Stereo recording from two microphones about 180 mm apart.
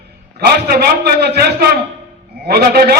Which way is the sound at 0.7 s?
60° right (ahead or behind).